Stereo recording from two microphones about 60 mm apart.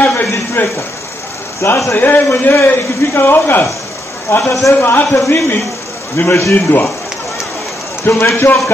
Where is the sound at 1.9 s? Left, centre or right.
Left.